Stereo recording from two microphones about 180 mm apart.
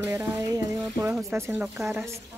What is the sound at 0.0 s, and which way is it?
Music, 20° right (ahead or behind).